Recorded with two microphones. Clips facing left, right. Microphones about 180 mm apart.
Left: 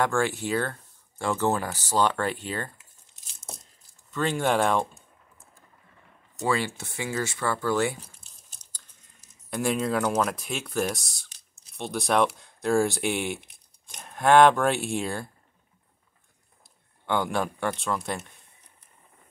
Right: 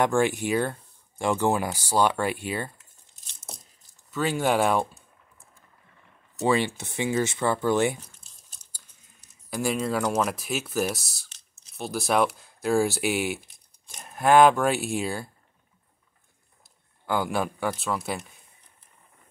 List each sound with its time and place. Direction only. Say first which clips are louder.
0.0 s speech: right 3 dB; 15° right (ahead or behind)
4.1 s speech: right 1 dB; 5° right (ahead or behind)
6.4 s speech: right 3 dB; 20° right (ahead or behind)
9.2 s speech: even; centre (ahead or behind)
17.0 s speech: even; 5° right (ahead or behind)